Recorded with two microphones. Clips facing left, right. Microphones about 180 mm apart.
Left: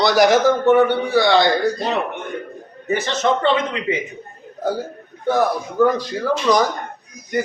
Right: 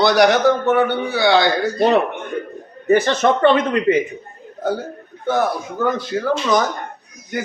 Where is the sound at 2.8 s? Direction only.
60° right (ahead or behind).